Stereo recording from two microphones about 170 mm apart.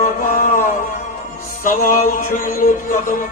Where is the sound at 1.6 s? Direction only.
55° left (ahead or behind).